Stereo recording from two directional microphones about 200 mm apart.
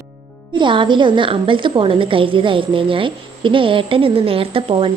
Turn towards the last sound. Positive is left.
turn(degrees=-25)  # may be behind; listen again after turning